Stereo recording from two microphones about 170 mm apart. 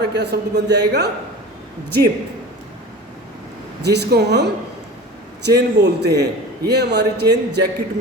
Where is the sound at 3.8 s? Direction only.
80° right.